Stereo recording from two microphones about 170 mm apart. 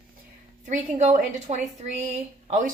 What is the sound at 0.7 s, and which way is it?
A woman's voice, 45° right (ahead or behind).